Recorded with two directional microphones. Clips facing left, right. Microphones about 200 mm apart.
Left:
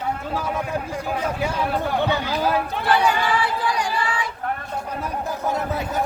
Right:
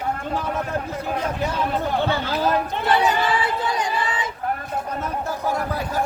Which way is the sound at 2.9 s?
20° right (ahead or behind).